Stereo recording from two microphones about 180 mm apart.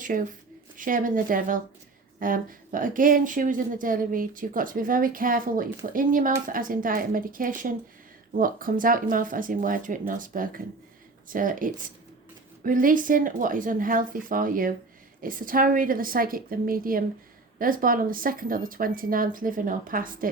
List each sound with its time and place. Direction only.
0.0 s speech: 50° right (ahead or behind)